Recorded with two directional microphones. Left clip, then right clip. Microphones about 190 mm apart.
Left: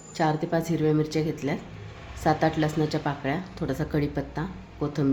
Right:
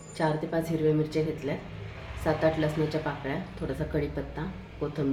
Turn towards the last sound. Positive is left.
turn(degrees=50)  # may be behind; listen again after turning